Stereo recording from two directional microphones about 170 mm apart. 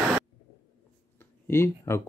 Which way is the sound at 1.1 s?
15° left (ahead or behind).